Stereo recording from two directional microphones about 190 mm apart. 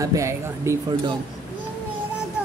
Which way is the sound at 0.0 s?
15° right (ahead or behind).